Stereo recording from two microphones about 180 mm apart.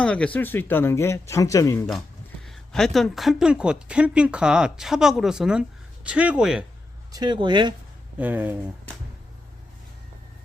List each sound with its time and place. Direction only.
0.0 s speech: 5° left (ahead or behind)
1.9 s speech: centre (ahead or behind)
7.1 s speech: 25° right (ahead or behind)
8.2 s speech: 10° right (ahead or behind)